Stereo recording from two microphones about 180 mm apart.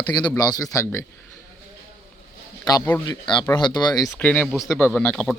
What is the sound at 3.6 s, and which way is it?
Speech, 25° left (ahead or behind).